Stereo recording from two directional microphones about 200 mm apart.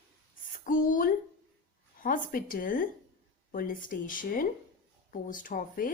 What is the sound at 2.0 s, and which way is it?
A woman's voice, 45° left (ahead or behind).